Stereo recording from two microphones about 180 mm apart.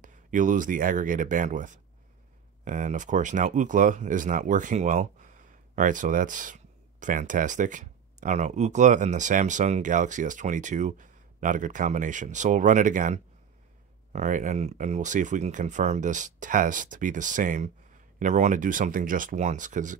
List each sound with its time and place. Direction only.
0.0 s speech: 45° right (ahead or behind)